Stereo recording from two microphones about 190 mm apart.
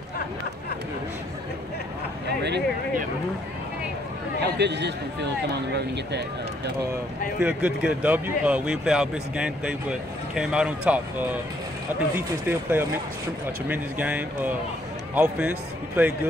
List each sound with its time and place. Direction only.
2.2 s speech: 60° right (ahead or behind)
4.4 s speech: 65° right (ahead or behind)
6.9 s speech: 10° right (ahead or behind)